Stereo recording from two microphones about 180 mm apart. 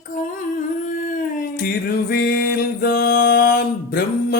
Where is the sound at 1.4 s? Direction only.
55° left (ahead or behind).